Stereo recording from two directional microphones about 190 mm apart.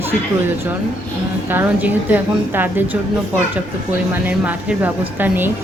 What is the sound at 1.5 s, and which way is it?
A woman's voice, 10° right (ahead or behind).